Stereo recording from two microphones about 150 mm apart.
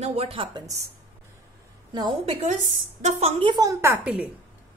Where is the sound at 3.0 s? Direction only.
45° right (ahead or behind).